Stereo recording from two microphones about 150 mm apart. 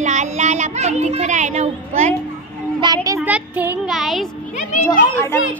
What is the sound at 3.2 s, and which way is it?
Speech, 10° right (ahead or behind).